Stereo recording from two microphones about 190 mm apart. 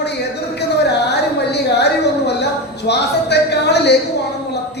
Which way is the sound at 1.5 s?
60° left (ahead or behind).